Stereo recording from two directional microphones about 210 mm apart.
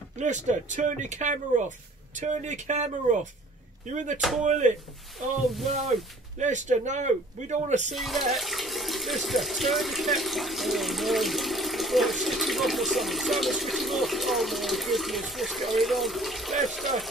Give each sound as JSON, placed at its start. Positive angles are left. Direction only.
{"t": 0.2, "sound": "a man's voice", "side_deg": -35}
{"t": 5.8, "sound": "speech", "side_deg": 0}
{"t": 6.4, "sound": "a man's voice", "side_deg": -35}
{"t": 7.9, "sound": "speech", "side_deg": 0}